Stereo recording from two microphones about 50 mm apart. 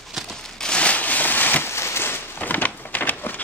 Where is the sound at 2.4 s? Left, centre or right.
Left.